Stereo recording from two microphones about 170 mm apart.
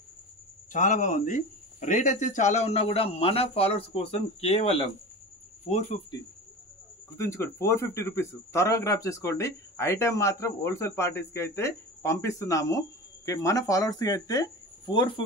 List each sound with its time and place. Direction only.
0.7 s speech: 45° left (ahead or behind)
7.2 s speech: 15° left (ahead or behind)